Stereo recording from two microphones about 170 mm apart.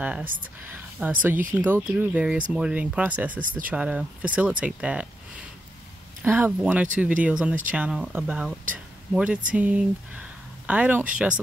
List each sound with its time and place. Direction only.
0.9 s speech: 10° right (ahead or behind)
3.4 s speech: 50° right (ahead or behind)
3.7 s speech: 5° right (ahead or behind)
6.2 s speech: 10° right (ahead or behind)